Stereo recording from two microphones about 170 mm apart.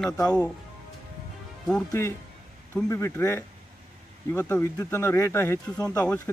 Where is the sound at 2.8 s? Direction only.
15° left (ahead or behind).